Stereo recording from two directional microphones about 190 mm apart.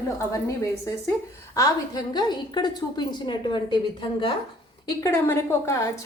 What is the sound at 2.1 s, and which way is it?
A woman's voice, 25° left (ahead or behind).